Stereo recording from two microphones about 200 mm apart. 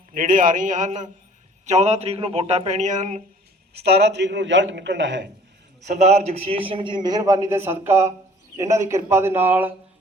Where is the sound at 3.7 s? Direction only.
55° right (ahead or behind).